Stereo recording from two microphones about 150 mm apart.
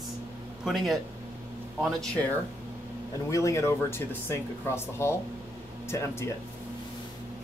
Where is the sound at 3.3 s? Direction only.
20° left (ahead or behind).